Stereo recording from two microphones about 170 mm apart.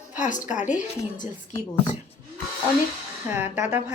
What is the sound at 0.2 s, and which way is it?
Speech, 50° left (ahead or behind).